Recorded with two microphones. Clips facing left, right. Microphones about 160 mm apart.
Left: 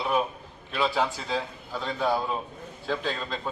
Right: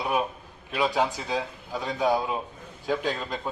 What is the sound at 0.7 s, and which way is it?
A man's voice, 15° right (ahead or behind).